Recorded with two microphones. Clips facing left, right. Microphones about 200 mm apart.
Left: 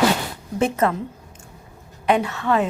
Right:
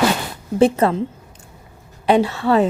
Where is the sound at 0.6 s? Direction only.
30° right (ahead or behind).